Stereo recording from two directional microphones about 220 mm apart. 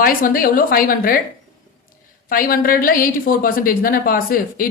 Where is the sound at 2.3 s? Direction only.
40° left (ahead or behind).